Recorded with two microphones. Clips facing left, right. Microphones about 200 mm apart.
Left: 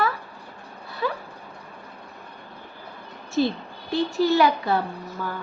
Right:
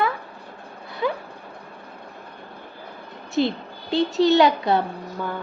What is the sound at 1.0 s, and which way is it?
Dog, 20° right (ahead or behind).